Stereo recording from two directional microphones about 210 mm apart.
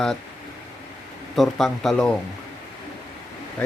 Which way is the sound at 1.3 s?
Centre (ahead or behind).